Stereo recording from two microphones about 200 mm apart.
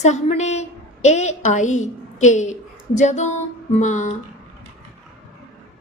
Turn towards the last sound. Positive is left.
turn(degrees=40)  # may be behind; listen again after turning